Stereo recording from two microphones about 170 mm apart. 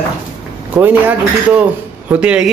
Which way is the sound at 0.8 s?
10° right (ahead or behind).